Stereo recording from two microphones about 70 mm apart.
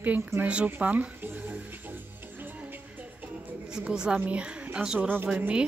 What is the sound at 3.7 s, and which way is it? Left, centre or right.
Speech, centre.